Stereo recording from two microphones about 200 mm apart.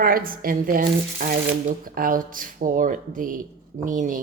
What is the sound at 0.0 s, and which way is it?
Speech, 45° right (ahead or behind).